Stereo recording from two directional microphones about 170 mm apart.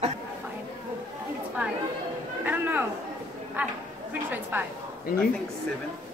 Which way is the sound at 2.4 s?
10° right (ahead or behind).